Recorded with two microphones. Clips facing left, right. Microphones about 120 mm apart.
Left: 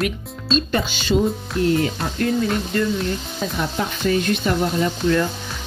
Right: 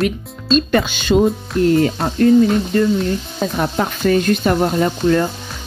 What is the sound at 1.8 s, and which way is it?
Speech, 40° right (ahead or behind).